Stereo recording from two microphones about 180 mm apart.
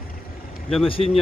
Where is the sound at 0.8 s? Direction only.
30° left (ahead or behind).